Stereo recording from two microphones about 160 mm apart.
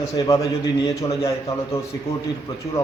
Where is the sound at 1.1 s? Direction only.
35° left (ahead or behind).